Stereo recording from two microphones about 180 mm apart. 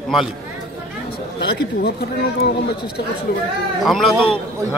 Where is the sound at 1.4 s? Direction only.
65° left (ahead or behind).